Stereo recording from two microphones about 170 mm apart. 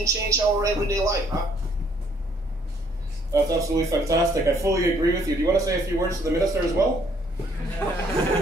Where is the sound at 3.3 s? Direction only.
20° right (ahead or behind).